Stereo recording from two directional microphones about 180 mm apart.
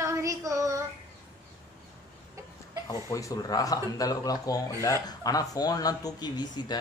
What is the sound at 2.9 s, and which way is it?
Speech, 15° left (ahead or behind).